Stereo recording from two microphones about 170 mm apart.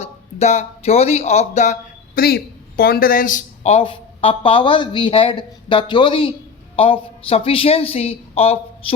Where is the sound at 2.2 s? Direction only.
65° left (ahead or behind).